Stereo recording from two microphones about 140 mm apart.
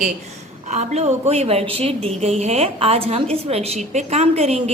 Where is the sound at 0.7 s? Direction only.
50° right (ahead or behind).